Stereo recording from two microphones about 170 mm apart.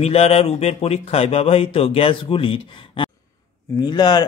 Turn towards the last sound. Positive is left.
turn(degrees=25)  # may be behind; listen again after turning